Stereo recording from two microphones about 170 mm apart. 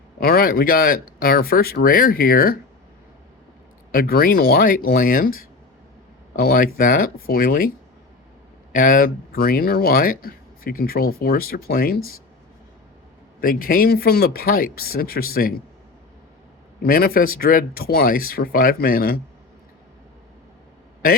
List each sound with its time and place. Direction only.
0.2 s speech: 60° left (ahead or behind)
3.9 s speech: 60° left (ahead or behind)
8.7 s speech: 55° left (ahead or behind)
13.4 s speech: 55° left (ahead or behind)
16.8 s speech: 60° left (ahead or behind)